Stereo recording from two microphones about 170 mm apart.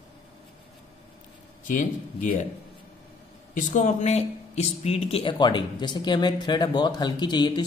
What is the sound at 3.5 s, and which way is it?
Speech, 50° left (ahead or behind).